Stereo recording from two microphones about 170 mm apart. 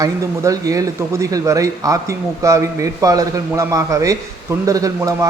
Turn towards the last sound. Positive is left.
turn(degrees=-20)  # may be behind; listen again after turning